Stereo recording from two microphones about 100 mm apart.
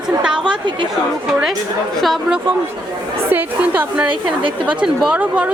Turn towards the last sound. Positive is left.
turn(degrees=-10)  # may be behind; listen again after turning